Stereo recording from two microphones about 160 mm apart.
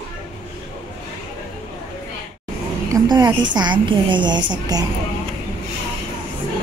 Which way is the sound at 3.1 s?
30° right (ahead or behind).